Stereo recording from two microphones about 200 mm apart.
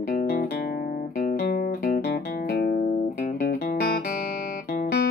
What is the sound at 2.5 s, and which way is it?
Music, 55° left (ahead or behind).